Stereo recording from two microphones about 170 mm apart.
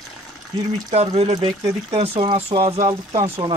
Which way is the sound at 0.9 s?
40° right (ahead or behind).